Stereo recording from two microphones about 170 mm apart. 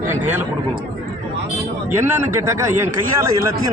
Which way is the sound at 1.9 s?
15° right (ahead or behind).